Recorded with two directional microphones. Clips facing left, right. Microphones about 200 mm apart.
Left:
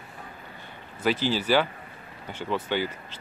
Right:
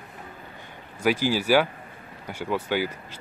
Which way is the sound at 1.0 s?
10° right (ahead or behind).